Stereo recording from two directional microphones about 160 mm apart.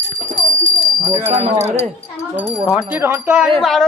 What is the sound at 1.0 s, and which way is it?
Speech, 25° right (ahead or behind).